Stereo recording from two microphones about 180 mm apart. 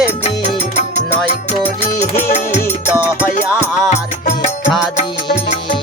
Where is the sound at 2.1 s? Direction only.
40° left (ahead or behind).